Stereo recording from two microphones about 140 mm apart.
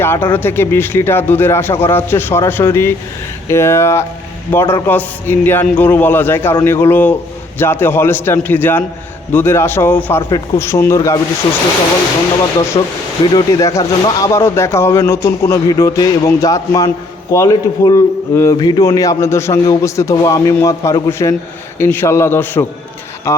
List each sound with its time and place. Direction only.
0.0 s a man's voice: 15° left (ahead or behind)
10.2 s speech: 30° left (ahead or behind)
10.6 s a man's voice: 20° left (ahead or behind)
12.7 s speech: 35° left (ahead or behind)
13.7 s a man's voice: 20° left (ahead or behind)
23.3 s mantra: 20° left (ahead or behind)